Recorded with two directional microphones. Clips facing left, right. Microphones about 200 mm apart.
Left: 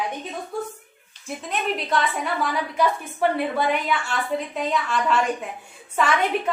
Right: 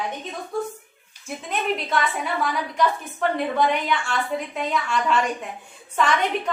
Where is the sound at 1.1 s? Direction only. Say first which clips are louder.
Even; centre (ahead or behind).